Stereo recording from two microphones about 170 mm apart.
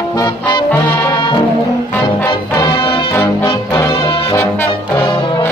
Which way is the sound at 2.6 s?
30° left (ahead or behind).